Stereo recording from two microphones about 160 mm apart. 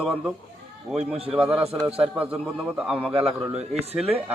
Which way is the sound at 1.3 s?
5° right (ahead or behind).